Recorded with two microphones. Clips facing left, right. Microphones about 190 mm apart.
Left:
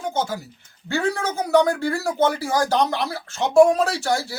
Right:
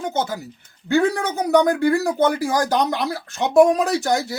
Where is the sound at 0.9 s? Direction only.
15° right (ahead or behind).